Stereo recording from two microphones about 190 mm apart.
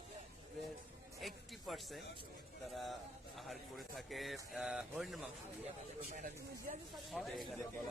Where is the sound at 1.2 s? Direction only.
Centre (ahead or behind).